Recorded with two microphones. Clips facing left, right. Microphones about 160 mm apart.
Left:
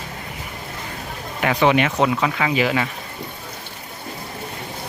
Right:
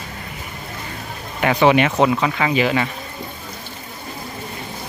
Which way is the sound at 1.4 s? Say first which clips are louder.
Right 3 dB; centre (ahead or behind).